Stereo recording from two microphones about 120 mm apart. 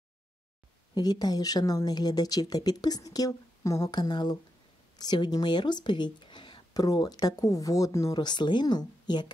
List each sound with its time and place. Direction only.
0.9 s a woman's voice: 35° left (ahead or behind)